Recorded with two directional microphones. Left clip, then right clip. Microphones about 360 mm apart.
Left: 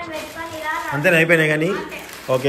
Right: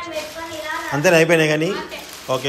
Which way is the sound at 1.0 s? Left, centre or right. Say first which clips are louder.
Right 1 dB; centre.